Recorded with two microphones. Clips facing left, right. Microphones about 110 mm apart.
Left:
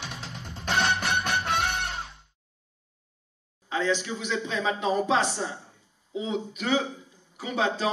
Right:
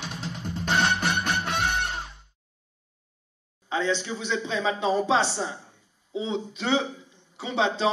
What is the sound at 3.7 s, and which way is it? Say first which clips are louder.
A man's voice: even; 30° right (ahead or behind).